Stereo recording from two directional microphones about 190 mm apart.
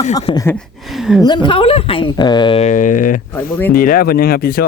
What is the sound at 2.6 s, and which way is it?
Speech, 40° left (ahead or behind).